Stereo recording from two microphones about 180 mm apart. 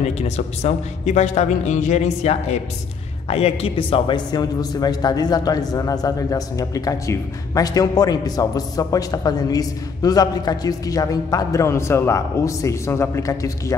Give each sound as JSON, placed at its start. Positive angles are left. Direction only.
{"t": 0.0, "sound": "a man's voice", "side_deg": 35}